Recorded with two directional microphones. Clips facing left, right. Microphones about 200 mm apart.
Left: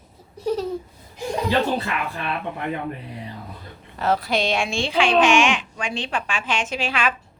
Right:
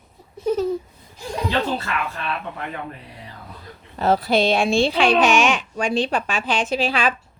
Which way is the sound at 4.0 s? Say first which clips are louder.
Right 4 dB; 35° right (ahead or behind).